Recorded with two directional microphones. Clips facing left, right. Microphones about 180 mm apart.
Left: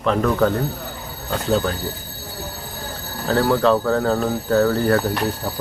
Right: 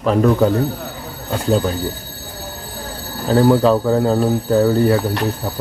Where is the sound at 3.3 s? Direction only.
20° right (ahead or behind).